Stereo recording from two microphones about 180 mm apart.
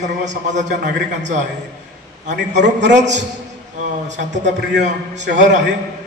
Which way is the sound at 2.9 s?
40° right (ahead or behind).